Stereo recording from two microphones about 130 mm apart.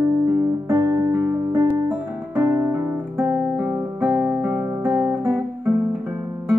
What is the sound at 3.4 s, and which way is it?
Guitar, 5° right (ahead or behind).